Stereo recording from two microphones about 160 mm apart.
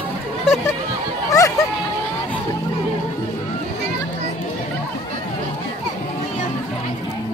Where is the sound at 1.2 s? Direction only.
20° left (ahead or behind).